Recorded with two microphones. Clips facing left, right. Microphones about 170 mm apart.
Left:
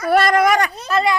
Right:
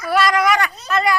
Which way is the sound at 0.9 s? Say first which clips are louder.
Left 1 dB; 30° left (ahead or behind).